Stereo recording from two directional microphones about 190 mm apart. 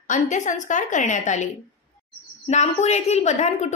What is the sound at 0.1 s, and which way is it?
A woman's voice, 40° left (ahead or behind).